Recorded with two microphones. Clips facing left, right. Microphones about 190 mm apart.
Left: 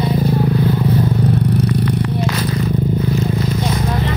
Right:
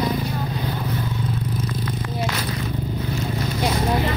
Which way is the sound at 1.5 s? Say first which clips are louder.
Left 10 dB; 70° left (ahead or behind).